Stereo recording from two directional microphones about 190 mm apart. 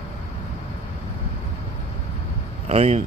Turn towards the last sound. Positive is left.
turn(degrees=-35)  # may be behind; listen again after turning